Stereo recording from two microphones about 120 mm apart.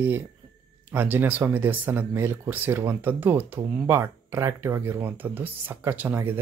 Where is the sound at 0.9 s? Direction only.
15° right (ahead or behind).